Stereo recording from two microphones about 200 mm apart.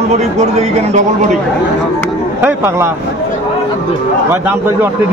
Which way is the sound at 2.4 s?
10° right (ahead or behind).